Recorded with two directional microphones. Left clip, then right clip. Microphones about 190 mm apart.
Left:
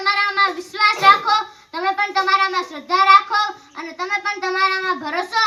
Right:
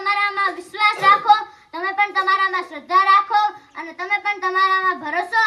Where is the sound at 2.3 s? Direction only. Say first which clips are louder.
Left 1 dB; 15° left (ahead or behind).